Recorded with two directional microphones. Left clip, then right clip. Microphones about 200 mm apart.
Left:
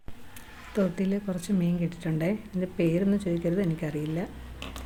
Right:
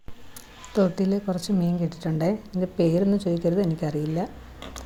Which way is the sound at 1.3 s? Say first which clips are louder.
Right 4 dB; 5° left (ahead or behind).